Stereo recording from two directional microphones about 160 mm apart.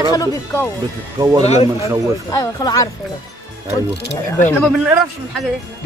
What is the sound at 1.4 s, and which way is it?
Speech, 40° left (ahead or behind).